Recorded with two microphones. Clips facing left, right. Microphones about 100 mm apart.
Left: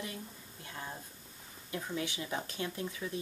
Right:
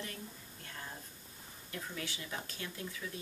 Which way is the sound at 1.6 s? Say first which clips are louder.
Left 6 dB; 20° left (ahead or behind).